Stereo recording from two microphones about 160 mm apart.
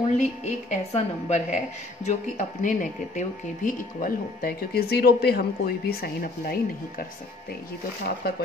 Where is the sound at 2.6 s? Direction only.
55° left (ahead or behind).